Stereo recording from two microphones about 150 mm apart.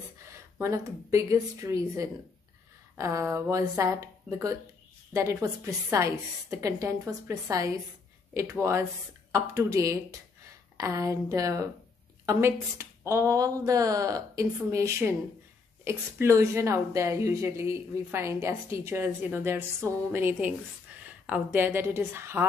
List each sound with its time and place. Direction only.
0.6 s a woman's voice: 20° right (ahead or behind)